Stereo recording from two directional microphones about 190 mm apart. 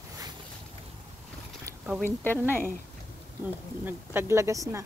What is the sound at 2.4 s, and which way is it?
Speech, 10° right (ahead or behind).